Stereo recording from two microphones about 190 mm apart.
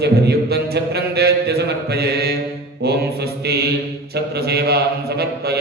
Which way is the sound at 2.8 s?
55° right (ahead or behind).